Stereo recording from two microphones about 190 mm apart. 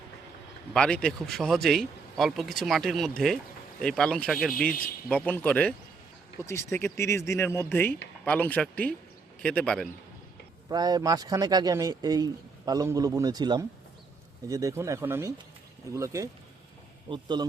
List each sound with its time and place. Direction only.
0.7 s speech: 5° left (ahead or behind)
10.7 s a man's voice: 20° right (ahead or behind)